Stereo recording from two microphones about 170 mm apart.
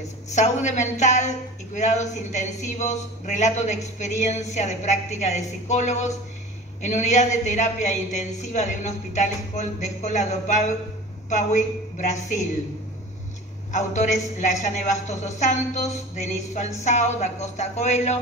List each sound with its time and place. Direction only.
0.3 s a woman's voice: 45° left (ahead or behind)
13.7 s a woman's voice: 45° left (ahead or behind)